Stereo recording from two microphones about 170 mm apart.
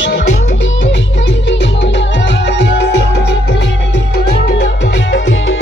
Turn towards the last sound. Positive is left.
turn(degrees=90)